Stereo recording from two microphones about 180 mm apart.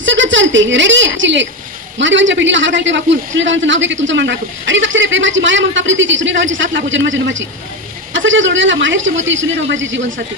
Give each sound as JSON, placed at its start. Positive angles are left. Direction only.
{"t": 0.0, "sound": "a woman's voice", "side_deg": -90}